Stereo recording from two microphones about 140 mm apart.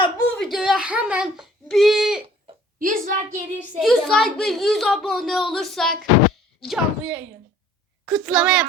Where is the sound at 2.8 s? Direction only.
80° right.